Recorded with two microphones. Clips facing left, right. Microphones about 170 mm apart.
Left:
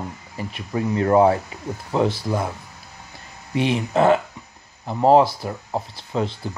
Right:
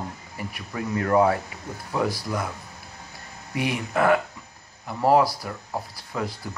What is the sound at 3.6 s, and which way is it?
Speech, 25° left (ahead or behind).